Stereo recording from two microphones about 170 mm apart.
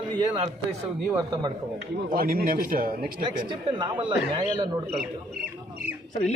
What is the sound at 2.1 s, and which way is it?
Speech, 60° right (ahead or behind).